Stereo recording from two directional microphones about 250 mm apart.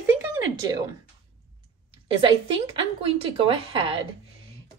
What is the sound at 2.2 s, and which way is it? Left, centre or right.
A woman's voice, right.